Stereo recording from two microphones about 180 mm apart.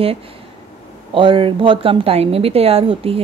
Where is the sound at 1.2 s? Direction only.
30° right (ahead or behind).